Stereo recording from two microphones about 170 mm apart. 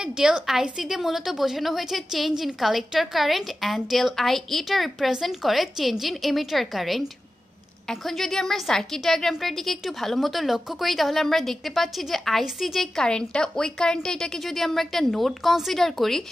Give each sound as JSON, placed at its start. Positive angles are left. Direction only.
{"t": 0.0, "sound": "a woman's voice", "side_deg": -5}